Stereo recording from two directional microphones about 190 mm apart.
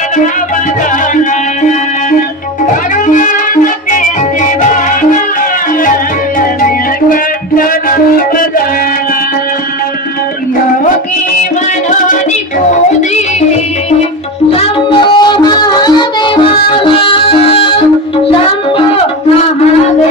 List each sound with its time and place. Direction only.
3.1 s music: 40° left (ahead or behind)
14.5 s music: 30° left (ahead or behind)